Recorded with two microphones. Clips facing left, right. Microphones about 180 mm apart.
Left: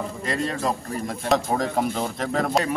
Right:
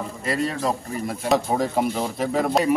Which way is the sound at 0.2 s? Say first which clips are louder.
Right 2 dB; 5° right (ahead or behind).